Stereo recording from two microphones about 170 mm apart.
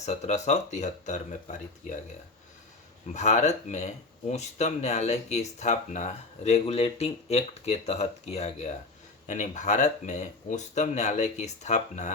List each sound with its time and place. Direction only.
0.0 s speech: 40° left (ahead or behind)
3.1 s speech: 45° left (ahead or behind)